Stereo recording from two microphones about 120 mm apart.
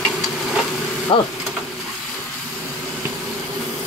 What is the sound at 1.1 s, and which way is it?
Speech, 45° left (ahead or behind).